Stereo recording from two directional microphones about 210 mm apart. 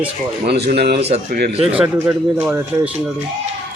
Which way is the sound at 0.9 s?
30° right (ahead or behind).